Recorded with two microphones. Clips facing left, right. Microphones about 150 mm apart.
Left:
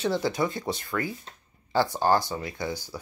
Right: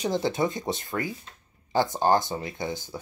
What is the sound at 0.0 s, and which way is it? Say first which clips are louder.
Speech: even; 20° right (ahead or behind).